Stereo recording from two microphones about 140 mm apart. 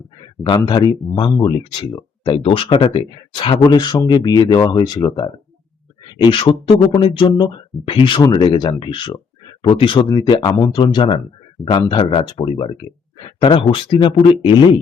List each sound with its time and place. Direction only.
0.4 s speech: 30° left (ahead or behind)